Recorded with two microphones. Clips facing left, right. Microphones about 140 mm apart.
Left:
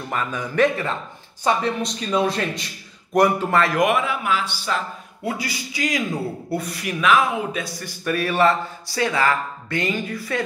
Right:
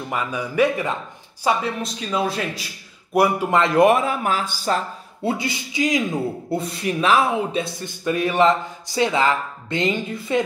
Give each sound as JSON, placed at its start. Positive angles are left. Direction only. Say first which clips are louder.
{"t": 0.1, "sound": "a man's voice", "louder": "even", "side_deg": -10}
{"t": 5.4, "sound": "speech", "louder": "right 4 dB", "side_deg": -20}